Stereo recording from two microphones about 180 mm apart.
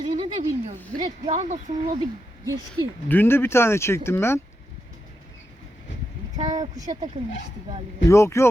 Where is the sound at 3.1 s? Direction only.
10° left (ahead or behind).